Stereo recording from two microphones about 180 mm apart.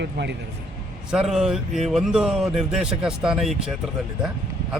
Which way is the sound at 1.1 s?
Centre (ahead or behind).